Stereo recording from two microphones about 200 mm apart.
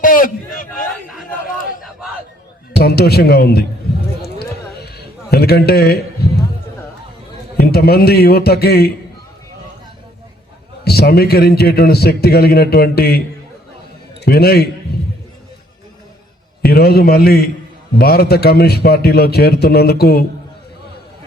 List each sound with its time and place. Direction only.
0.0 s a sound: 45° left (ahead or behind)
2.7 s a man's voice: 50° left (ahead or behind)
4.2 s a sound: 50° left (ahead or behind)
7.5 s a man's voice: 50° left (ahead or behind)
10.8 s a man's voice: 50° left (ahead or behind)
16.6 s a man's voice: 50° left (ahead or behind)